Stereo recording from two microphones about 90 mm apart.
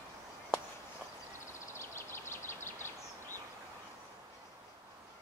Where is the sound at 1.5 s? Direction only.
30° left (ahead or behind).